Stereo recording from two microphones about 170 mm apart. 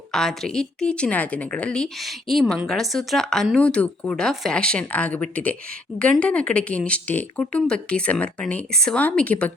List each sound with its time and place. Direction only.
0.1 s a woman's voice: 5° left (ahead or behind)